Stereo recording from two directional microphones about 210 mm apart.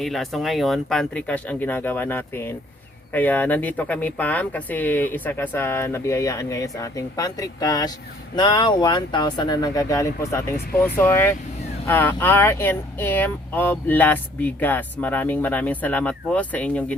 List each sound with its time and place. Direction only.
0.0 s speech: centre (ahead or behind)